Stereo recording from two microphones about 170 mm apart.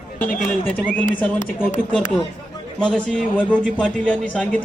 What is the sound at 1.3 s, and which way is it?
Speech, 50° left (ahead or behind).